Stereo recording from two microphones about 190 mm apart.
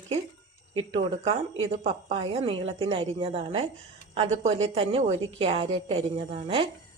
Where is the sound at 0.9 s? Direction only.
30° right (ahead or behind).